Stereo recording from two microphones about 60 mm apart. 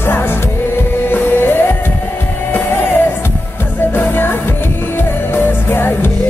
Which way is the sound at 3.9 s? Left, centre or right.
Left.